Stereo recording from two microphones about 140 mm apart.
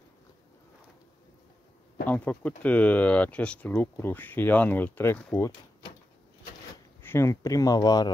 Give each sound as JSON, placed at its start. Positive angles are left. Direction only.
{"t": 2.0, "sound": "speech", "side_deg": 10}
{"t": 7.0, "sound": "speech", "side_deg": 15}